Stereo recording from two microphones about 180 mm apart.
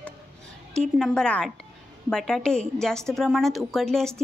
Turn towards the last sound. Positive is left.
turn(degrees=5)  # may be behind; listen again after turning